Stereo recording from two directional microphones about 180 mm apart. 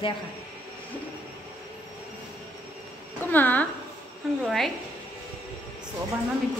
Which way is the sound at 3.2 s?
10° left (ahead or behind).